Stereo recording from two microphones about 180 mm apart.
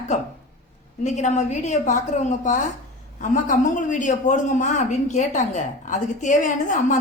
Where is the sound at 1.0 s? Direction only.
40° left (ahead or behind).